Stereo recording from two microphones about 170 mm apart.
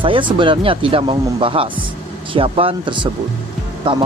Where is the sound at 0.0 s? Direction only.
30° right (ahead or behind).